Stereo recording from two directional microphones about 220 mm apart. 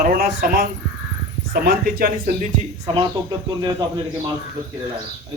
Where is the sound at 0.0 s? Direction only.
40° right (ahead or behind).